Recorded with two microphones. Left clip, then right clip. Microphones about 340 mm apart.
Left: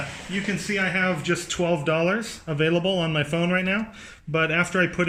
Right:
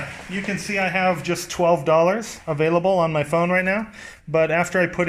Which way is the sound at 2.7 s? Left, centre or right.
Right.